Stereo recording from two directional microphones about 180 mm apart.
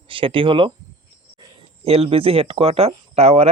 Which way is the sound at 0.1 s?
30° right (ahead or behind).